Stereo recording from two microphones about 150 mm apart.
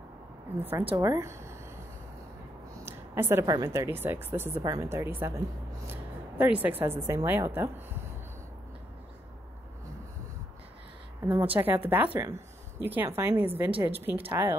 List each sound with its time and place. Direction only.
0.6 s a woman's voice: 15° right (ahead or behind)
2.7 s a woman's voice: 15° right (ahead or behind)
11.2 s speech: 10° right (ahead or behind)